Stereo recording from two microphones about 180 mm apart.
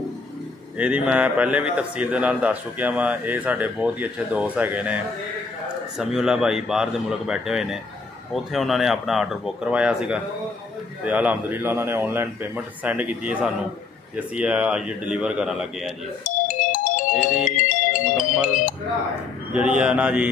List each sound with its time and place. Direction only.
0.7 s a man's voice: 5° right (ahead or behind)
16.3 s music: 45° left (ahead or behind)
18.1 s speech: 5° right (ahead or behind)
19.5 s a man's voice: 5° right (ahead or behind)